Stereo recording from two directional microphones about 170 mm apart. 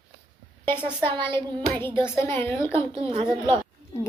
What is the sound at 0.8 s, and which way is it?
Speech, 10° left (ahead or behind).